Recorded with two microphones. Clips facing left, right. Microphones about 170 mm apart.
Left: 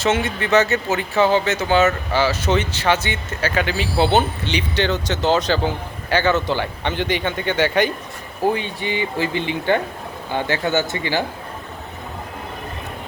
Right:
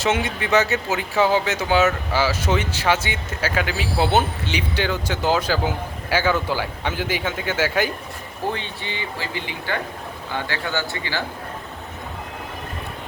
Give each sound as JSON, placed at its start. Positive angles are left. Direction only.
{"t": 0.0, "sound": "speech", "side_deg": -10}
{"t": 8.5, "sound": "speech", "side_deg": 15}